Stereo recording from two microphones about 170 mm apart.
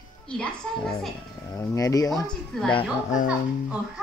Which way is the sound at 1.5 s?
20° left (ahead or behind).